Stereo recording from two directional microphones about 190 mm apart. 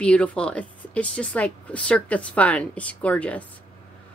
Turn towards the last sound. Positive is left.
turn(degrees=5)  # may be behind; listen again after turning